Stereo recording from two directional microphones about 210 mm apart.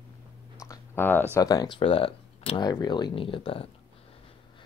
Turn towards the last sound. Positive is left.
turn(degrees=25)  # may be behind; listen again after turning